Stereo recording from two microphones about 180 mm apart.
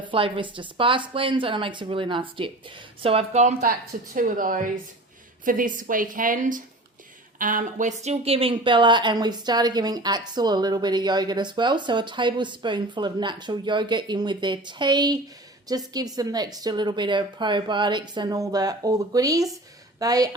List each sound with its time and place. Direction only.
0.0 s a woman's voice: 30° right (ahead or behind)